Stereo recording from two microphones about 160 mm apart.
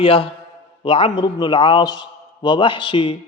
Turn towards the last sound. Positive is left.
turn(degrees=30)  # may be behind; listen again after turning